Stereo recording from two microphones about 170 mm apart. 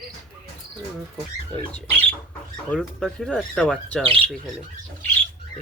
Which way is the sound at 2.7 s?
5° left (ahead or behind).